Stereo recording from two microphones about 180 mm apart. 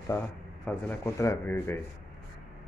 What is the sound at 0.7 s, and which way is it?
Speech, 10° left (ahead or behind).